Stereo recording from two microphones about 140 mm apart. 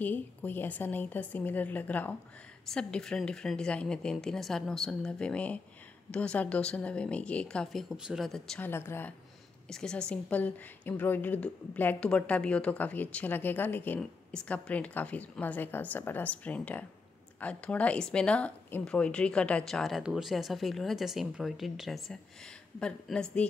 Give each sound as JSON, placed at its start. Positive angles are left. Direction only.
{"t": 0.0, "sound": "a woman's voice", "side_deg": 15}
{"t": 8.5, "sound": "a woman's voice", "side_deg": 15}
{"t": 9.7, "sound": "a woman's voice", "side_deg": 5}